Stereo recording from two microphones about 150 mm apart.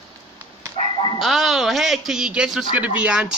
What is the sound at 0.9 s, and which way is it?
Dog, 30° left (ahead or behind).